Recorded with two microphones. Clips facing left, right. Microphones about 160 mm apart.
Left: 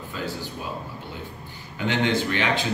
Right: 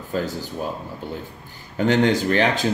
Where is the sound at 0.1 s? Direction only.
45° right (ahead or behind).